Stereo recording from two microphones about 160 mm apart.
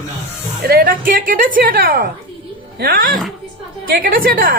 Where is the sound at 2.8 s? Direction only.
80° right.